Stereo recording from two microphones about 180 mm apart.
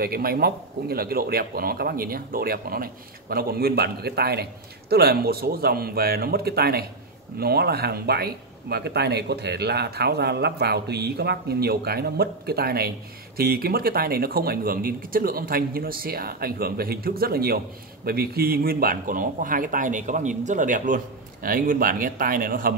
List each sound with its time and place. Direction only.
0.0 s speech: 55° right (ahead or behind)